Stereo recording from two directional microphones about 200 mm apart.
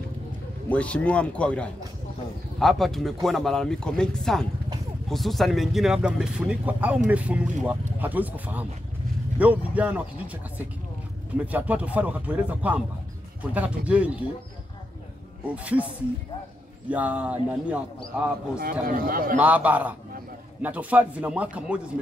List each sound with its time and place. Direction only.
0.7 s speech: 5° left (ahead or behind)
15.5 s speech: 5° right (ahead or behind)
16.9 s speech: 5° right (ahead or behind)
18.6 s a man's voice: 45° right (ahead or behind)
19.4 s speech: 10° right (ahead or behind)